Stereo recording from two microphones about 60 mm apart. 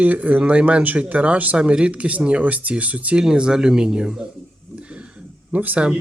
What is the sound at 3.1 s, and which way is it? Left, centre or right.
Speech, centre.